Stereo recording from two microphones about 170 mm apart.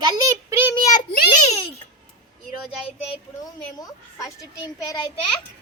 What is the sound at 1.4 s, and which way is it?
Speech, 40° left (ahead or behind).